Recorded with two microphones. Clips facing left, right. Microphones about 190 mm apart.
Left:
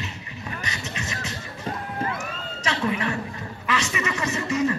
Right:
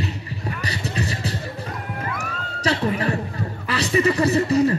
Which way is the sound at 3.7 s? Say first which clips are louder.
Right 7 dB; 35° right (ahead or behind).